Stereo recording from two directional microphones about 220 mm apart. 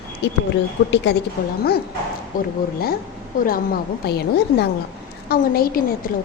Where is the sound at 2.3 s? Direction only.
40° left (ahead or behind).